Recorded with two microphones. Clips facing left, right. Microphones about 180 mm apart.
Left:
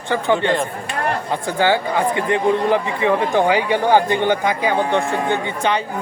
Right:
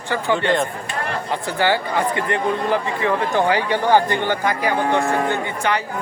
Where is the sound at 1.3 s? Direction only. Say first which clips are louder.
Left 1 dB; 15° left (ahead or behind).